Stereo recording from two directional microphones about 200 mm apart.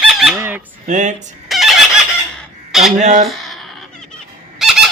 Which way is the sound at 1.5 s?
Centre (ahead or behind).